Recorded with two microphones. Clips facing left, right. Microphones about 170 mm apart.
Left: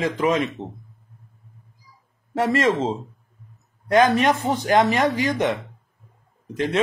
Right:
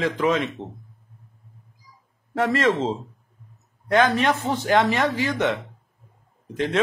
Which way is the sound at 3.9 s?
15° left (ahead or behind).